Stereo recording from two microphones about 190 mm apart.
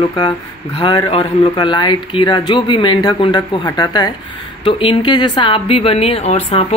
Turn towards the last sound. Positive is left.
turn(degrees=30)  # may be behind; listen again after turning